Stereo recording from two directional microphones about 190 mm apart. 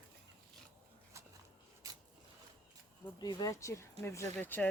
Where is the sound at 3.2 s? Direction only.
20° left (ahead or behind).